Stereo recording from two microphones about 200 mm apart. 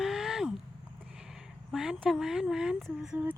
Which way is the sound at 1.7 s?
Centre (ahead or behind).